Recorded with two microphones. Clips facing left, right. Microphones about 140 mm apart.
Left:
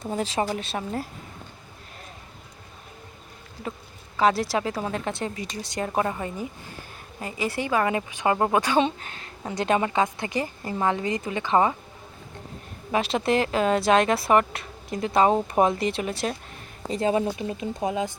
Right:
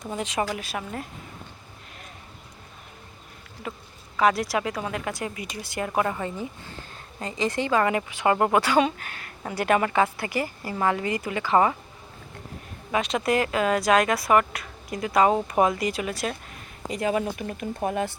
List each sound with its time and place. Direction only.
0.0 s speech: 30° left (ahead or behind)
4.2 s speech: 30° left (ahead or behind)
7.2 s a woman's voice: 10° left (ahead or behind)
12.9 s speech: 30° left (ahead or behind)